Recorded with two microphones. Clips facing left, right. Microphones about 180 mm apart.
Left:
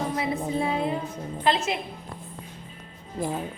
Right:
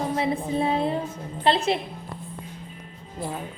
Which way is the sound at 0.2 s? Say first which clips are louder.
Right 3 dB; 30° right (ahead or behind).